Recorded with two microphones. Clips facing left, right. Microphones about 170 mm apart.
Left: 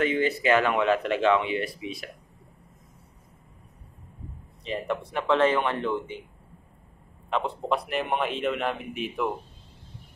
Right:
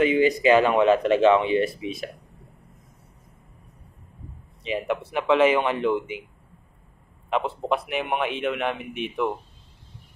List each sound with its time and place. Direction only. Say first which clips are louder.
0.0 s speech: right 5 dB; 15° right (ahead or behind)
4.6 s speech: right 3 dB; 5° right (ahead or behind)
7.2 s a man's voice: right 2 dB; 5° right (ahead or behind)